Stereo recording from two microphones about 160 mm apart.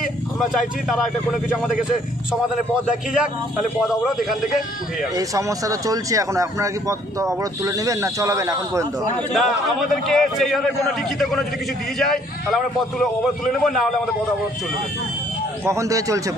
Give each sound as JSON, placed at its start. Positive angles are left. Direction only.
{"t": 0.8, "sound": "a man's voice", "side_deg": 0}
{"t": 5.1, "sound": "speech", "side_deg": -20}
{"t": 9.3, "sound": "a man's voice", "side_deg": 0}
{"t": 12.0, "sound": "a man's voice", "side_deg": 0}
{"t": 15.6, "sound": "speech", "side_deg": -20}